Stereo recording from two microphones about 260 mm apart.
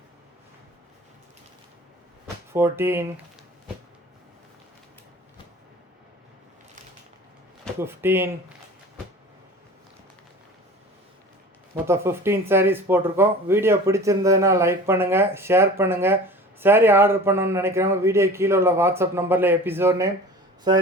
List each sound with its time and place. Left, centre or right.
2.5 s speech: centre
7.8 s speech: centre
11.7 s speech: centre